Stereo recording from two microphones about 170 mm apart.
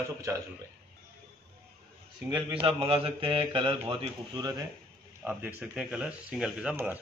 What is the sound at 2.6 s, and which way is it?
A man's voice, 35° right (ahead or behind).